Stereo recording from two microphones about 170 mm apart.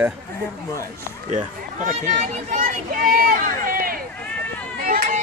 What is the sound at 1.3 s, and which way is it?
Speech, 50° right (ahead or behind).